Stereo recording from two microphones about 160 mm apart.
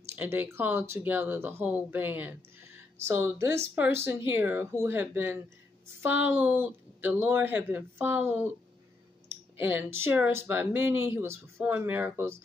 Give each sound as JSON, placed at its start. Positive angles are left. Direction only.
{"t": 0.1, "sound": "speech", "side_deg": -10}
{"t": 9.6, "sound": "speech", "side_deg": -10}